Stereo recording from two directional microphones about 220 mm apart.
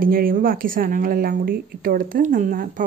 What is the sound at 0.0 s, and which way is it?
Speech, 40° right (ahead or behind).